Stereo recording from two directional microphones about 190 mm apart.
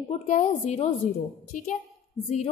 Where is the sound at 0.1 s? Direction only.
40° left (ahead or behind).